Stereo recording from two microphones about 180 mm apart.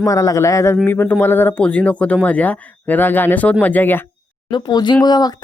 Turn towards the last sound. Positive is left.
turn(degrees=20)  # may be behind; listen again after turning